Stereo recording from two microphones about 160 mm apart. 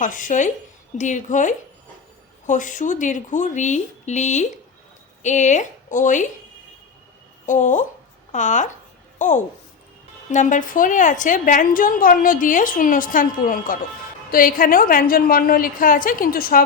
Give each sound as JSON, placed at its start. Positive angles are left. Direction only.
{"t": 0.0, "sound": "a woman's voice", "side_deg": 55}
{"t": 7.4, "sound": "a woman's voice", "side_deg": 50}